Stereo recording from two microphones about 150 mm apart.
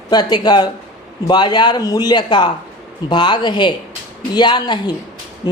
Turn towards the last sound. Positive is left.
turn(degrees=25)  # may be behind; listen again after turning